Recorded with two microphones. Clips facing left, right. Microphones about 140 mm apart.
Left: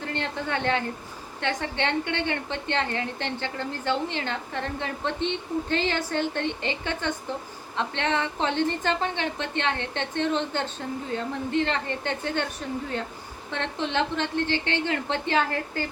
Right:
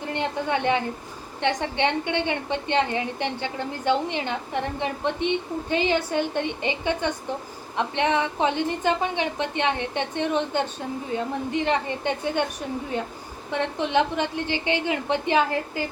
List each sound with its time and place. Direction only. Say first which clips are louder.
0.0 s a woman's voice: right 3 dB; 15° right (ahead or behind)